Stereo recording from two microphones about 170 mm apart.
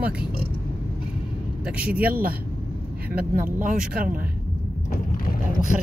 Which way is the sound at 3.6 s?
55° right (ahead or behind).